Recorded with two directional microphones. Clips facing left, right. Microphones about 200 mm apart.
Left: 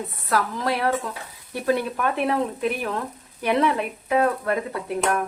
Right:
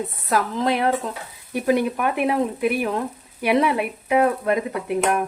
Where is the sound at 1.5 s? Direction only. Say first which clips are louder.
Right 3 dB; 15° right (ahead or behind).